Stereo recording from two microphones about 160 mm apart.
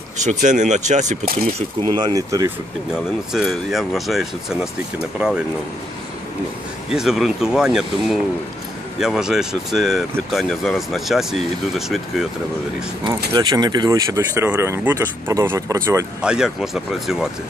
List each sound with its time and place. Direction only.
0.2 s speech: 50° right (ahead or behind)
2.0 s speech: 20° right (ahead or behind)
3.3 s speech: centre (ahead or behind)
6.9 s speech: centre (ahead or behind)
13.3 s speech: 25° right (ahead or behind)
16.2 s speech: 5° right (ahead or behind)